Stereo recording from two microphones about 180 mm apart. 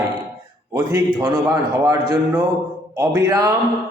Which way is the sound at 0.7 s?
20° right (ahead or behind).